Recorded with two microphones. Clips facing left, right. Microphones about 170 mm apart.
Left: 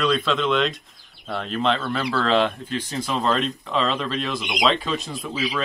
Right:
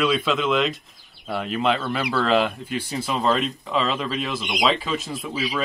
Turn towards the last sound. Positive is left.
turn(degrees=0)  # may be behind; listen again after turning